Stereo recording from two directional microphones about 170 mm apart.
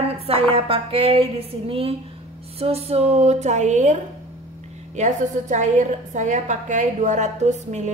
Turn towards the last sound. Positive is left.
turn(degrees=-45)  # may be behind; listen again after turning